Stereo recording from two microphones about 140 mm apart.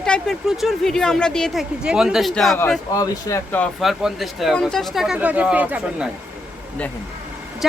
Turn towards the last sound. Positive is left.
turn(degrees=-10)  # may be behind; listen again after turning